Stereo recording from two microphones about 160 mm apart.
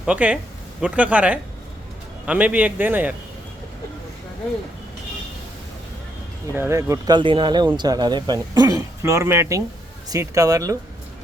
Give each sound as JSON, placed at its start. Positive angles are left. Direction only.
{"t": 0.0, "sound": "a man's voice", "side_deg": -5}
{"t": 6.6, "sound": "speech", "side_deg": -15}